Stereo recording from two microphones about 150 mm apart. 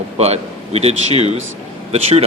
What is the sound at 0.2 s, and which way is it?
A man's voice, 45° right (ahead or behind).